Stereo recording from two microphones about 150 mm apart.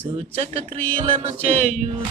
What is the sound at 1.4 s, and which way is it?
Speech, 45° right (ahead or behind).